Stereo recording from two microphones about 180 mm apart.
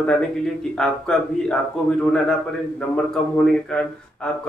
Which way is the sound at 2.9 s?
5° left (ahead or behind).